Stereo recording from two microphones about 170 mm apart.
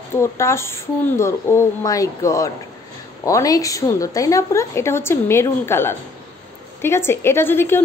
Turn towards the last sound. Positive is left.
turn(degrees=15)  # may be behind; listen again after turning